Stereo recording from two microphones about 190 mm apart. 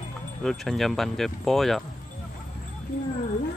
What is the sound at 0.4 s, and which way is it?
Speech, centre (ahead or behind).